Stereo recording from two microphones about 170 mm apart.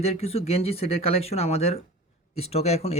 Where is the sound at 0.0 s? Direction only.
35° left (ahead or behind).